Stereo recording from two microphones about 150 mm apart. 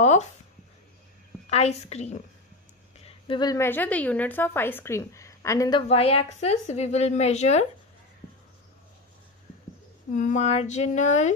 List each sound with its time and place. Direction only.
0.0 s speech: 50° left (ahead or behind)
1.5 s a woman's voice: 45° left (ahead or behind)
3.0 s a sound: 30° left (ahead or behind)
3.5 s a woman's voice: 15° left (ahead or behind)
5.8 s a woman's voice: 40° left (ahead or behind)
10.1 s a woman's voice: 55° left (ahead or behind)